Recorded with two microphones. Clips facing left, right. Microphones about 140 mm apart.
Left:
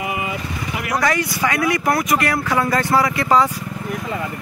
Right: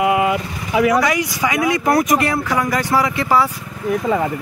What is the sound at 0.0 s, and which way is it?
Vehicle, 80° right.